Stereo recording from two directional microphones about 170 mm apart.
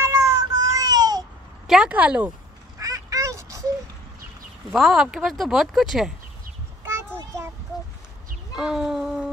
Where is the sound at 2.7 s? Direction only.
20° right (ahead or behind).